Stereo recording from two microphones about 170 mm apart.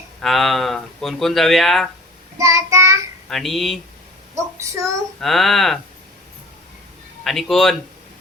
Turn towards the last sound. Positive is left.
turn(degrees=0)  # may be behind; listen again after turning